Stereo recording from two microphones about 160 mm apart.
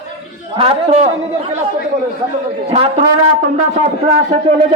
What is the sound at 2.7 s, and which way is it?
Speech, 35° right (ahead or behind).